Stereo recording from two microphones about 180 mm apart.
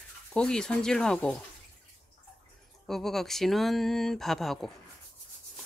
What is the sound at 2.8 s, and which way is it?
Speech, centre (ahead or behind).